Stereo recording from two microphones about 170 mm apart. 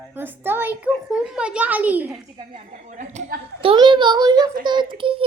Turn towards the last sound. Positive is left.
turn(degrees=-30)  # may be behind; listen again after turning